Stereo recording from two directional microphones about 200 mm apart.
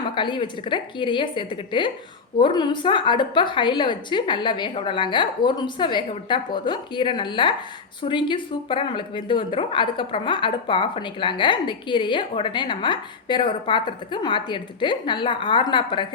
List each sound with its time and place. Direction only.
0.1 s a woman's voice: 25° left (ahead or behind)